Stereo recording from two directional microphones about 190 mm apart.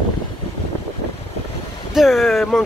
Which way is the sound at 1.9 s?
Centre (ahead or behind).